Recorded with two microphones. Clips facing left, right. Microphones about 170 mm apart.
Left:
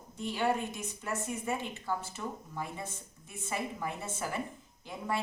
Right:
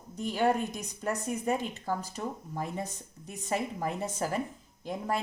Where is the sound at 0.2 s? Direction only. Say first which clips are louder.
Right 4 dB; 40° right (ahead or behind).